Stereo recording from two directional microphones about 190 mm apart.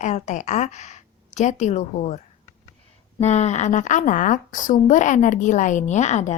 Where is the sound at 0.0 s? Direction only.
40° left (ahead or behind).